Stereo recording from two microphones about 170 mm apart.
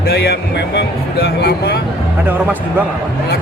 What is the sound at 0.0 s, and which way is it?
Speech, 70° left (ahead or behind).